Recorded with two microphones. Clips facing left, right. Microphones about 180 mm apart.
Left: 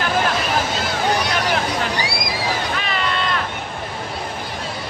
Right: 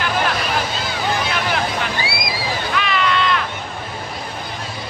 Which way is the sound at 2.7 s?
40° left (ahead or behind).